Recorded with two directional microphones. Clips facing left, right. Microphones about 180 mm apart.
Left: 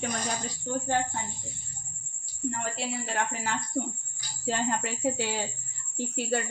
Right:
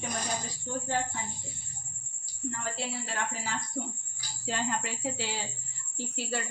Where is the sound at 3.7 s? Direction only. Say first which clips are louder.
Left 5 dB; 45° left (ahead or behind).